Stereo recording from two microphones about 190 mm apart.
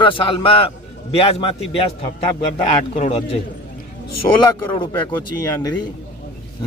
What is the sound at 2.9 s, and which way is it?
Speech, 30° left (ahead or behind).